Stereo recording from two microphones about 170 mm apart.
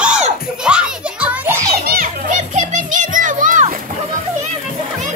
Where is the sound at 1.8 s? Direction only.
60° right (ahead or behind).